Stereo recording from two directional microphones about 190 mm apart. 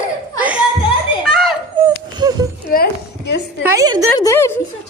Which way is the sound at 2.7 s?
55° left (ahead or behind).